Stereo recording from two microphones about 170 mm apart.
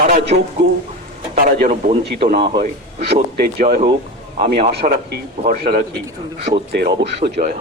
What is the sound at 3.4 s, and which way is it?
Speech, 60° right (ahead or behind).